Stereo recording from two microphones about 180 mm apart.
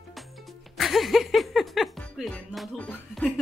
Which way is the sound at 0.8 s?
Centre (ahead or behind).